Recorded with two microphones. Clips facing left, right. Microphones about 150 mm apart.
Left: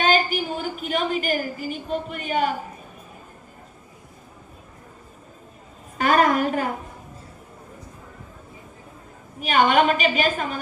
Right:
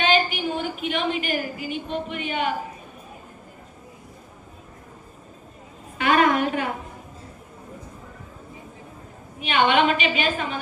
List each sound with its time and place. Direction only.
0.0 s a woman's voice: 40° left (ahead or behind)
6.0 s a child's voice: 40° left (ahead or behind)
9.4 s a woman's voice: 40° left (ahead or behind)